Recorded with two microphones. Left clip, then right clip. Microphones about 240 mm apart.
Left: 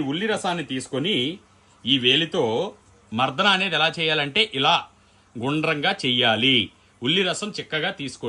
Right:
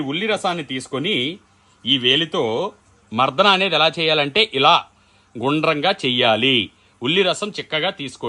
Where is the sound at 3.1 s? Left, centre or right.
Right.